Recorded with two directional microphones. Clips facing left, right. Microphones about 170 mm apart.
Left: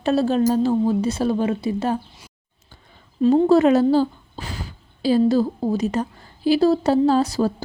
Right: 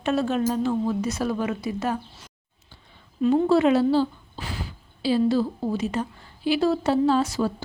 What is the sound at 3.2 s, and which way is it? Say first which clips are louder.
A woman's voice: left 4 dB; 35° left (ahead or behind).